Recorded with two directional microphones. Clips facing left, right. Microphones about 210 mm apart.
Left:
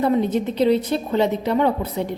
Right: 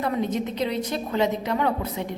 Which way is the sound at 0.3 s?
30° left (ahead or behind).